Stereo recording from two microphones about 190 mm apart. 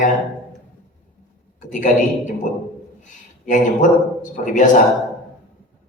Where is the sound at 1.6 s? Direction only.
40° left (ahead or behind).